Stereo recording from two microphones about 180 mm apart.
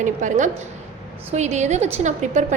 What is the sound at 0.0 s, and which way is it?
A woman's voice, 45° right (ahead or behind).